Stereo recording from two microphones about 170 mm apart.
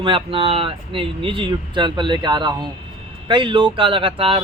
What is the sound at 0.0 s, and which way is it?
A man's voice, 30° right (ahead or behind).